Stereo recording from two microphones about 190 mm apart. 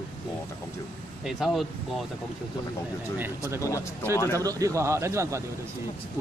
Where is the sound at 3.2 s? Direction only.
15° right (ahead or behind).